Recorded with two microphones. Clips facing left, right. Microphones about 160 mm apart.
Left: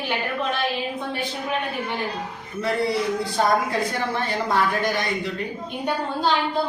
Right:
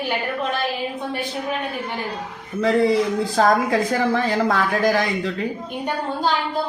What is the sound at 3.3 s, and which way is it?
Speech, 90° right.